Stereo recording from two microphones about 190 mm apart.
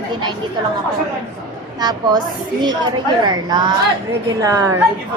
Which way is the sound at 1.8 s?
20° right (ahead or behind).